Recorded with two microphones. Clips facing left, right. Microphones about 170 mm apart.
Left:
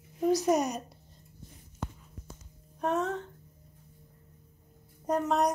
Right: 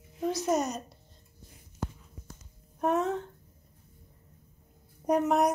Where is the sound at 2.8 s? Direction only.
10° right (ahead or behind).